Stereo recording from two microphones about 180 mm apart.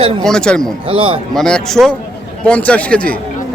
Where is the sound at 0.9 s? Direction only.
30° right (ahead or behind).